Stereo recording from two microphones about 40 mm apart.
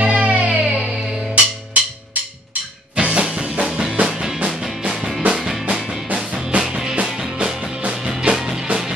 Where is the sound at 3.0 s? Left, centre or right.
Right.